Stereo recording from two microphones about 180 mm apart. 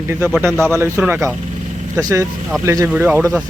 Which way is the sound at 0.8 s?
10° right (ahead or behind).